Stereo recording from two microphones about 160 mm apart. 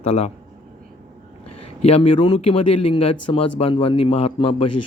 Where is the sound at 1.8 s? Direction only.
40° left (ahead or behind).